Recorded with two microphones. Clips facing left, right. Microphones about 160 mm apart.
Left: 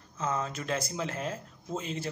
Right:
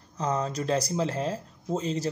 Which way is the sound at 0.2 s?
35° right (ahead or behind).